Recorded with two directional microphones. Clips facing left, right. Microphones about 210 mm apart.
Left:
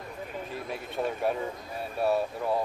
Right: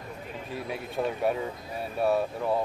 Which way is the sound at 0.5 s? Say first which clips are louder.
Right 2 dB; centre (ahead or behind).